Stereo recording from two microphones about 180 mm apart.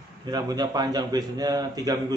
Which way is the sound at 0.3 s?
20° right (ahead or behind).